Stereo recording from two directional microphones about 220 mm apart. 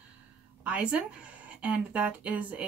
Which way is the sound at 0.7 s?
5° right (ahead or behind).